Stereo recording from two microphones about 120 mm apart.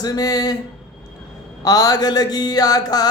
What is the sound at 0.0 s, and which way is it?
Speech, 30° left (ahead or behind).